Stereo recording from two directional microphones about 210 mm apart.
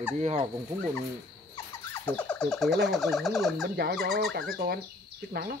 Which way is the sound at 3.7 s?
50° right (ahead or behind).